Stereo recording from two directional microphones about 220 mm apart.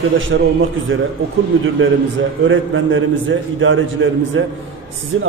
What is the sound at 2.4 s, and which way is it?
A man's voice, 60° right (ahead or behind).